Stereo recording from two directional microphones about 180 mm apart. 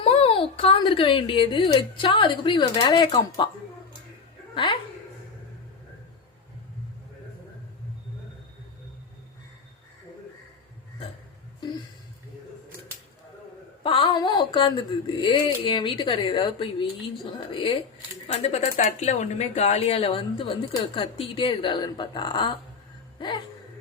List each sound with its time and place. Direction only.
0.0 s speech: 30° left (ahead or behind)
4.5 s a woman's voice: 25° left (ahead or behind)
13.8 s speech: 30° left (ahead or behind)